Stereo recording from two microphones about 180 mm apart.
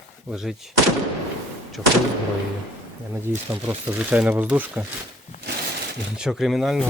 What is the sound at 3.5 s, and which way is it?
Speech, 10° right (ahead or behind).